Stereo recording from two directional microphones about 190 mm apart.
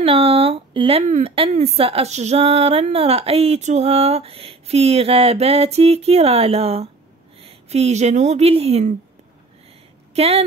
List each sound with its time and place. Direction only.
0.0 s a woman's voice: 30° right (ahead or behind)
10.1 s a woman's voice: 35° right (ahead or behind)